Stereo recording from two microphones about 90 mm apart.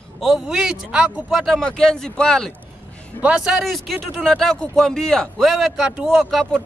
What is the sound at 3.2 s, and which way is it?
Speech, 10° right (ahead or behind).